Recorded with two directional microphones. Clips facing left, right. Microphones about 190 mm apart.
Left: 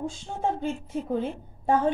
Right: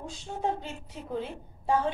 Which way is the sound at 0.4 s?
50° left (ahead or behind).